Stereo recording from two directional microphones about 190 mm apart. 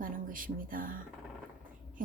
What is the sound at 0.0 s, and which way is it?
A woman's voice, 45° right (ahead or behind).